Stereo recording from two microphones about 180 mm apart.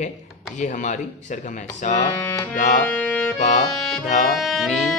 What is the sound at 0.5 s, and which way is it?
Speech, 45° left (ahead or behind).